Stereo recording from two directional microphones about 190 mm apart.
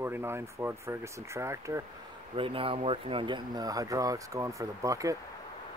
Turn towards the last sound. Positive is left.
turn(degrees=-15)  # may be behind; listen again after turning